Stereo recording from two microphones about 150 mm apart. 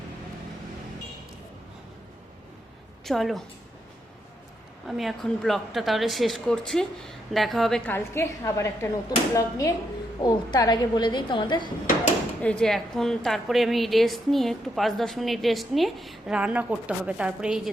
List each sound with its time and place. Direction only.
3.0 s a woman's voice: centre (ahead or behind)
4.9 s a woman's voice: centre (ahead or behind)
7.9 s speech: 15° left (ahead or behind); by 11.7 s 30° left (ahead or behind)
12.4 s a woman's voice: 5° left (ahead or behind)